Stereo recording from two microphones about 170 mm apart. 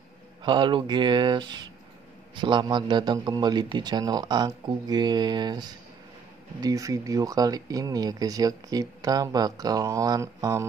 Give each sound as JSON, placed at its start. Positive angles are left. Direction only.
{"t": 0.4, "sound": "speech", "side_deg": -25}